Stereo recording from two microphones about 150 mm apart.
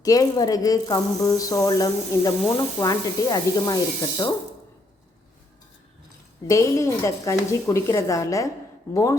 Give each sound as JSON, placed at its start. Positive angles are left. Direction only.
{"t": 0.0, "sound": "speech", "side_deg": 25}
{"t": 6.5, "sound": "speech", "side_deg": 20}